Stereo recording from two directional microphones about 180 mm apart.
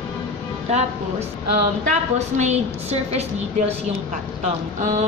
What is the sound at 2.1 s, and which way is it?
Speech, 40° right (ahead or behind).